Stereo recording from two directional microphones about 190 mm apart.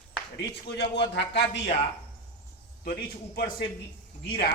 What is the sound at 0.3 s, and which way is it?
Speech, 65° left (ahead or behind).